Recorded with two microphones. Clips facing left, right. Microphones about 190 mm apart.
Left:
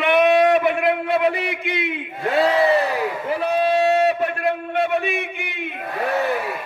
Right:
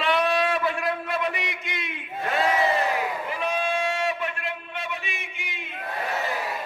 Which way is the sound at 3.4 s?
40° left (ahead or behind).